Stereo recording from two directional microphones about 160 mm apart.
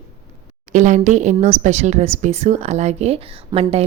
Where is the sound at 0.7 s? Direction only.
50° right (ahead or behind).